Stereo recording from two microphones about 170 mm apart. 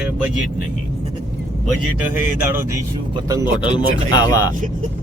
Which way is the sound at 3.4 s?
30° left (ahead or behind).